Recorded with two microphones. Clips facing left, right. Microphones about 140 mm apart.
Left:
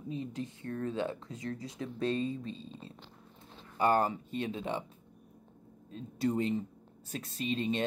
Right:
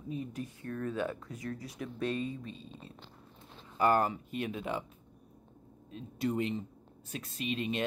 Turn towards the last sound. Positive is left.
turn(degrees=35)  # may be behind; listen again after turning